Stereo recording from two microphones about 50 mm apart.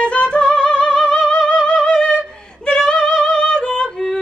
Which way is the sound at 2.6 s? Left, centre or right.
Centre.